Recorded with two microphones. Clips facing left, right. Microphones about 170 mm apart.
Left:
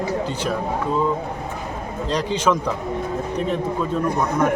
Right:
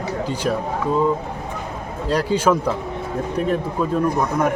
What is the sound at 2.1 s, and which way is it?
Speech, 10° right (ahead or behind).